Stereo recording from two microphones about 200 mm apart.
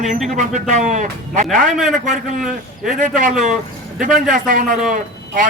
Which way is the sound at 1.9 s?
40° right (ahead or behind).